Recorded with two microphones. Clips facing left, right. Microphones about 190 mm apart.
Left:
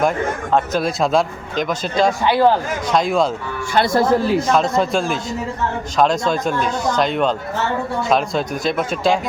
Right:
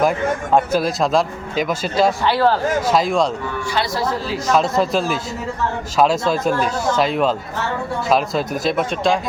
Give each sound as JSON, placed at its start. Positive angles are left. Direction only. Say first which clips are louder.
{"t": 0.5, "sound": "speech", "louder": "right 1 dB", "side_deg": -5}
{"t": 2.2, "sound": "speech", "louder": "left 2 dB", "side_deg": 15}
{"t": 2.8, "sound": "speech", "louder": "left 2 dB", "side_deg": -5}
{"t": 3.8, "sound": "speech", "louder": "left 8 dB", "side_deg": 50}
{"t": 4.5, "sound": "speech", "louder": "even", "side_deg": 0}